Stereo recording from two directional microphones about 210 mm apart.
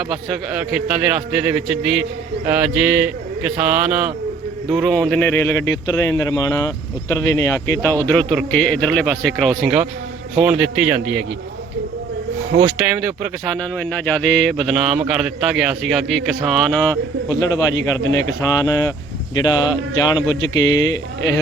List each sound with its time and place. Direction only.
0.1 s a man's voice: 5° right (ahead or behind)
14.0 s a man's voice: 5° left (ahead or behind)